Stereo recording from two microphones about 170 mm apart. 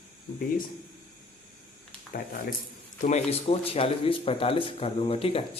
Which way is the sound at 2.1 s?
55° left (ahead or behind).